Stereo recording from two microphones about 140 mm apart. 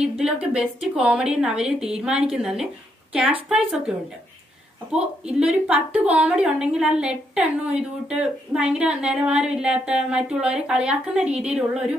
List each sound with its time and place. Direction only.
0.2 s a woman's voice: 5° right (ahead or behind)
4.9 s a woman's voice: 5° right (ahead or behind)